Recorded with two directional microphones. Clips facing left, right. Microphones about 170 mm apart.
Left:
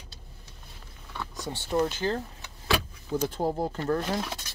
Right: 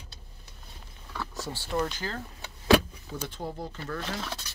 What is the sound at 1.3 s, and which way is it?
Speech, 20° left (ahead or behind).